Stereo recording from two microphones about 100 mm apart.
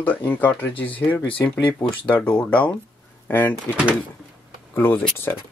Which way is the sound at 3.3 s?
25° left (ahead or behind).